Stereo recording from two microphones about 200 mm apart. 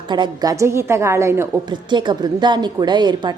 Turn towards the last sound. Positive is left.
turn(degrees=-20)  # may be behind; listen again after turning